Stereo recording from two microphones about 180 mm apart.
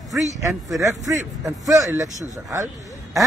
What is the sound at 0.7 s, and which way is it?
Speech, 15° right (ahead or behind).